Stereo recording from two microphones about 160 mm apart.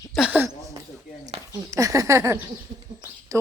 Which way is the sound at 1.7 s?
20° right (ahead or behind).